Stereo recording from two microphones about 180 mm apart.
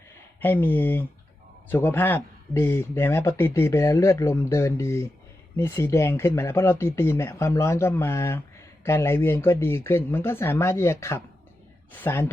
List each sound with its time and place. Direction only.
0.3 s speech: 10° left (ahead or behind)